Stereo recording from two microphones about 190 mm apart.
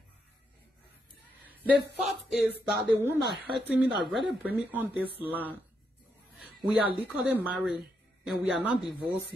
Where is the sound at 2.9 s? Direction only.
15° right (ahead or behind).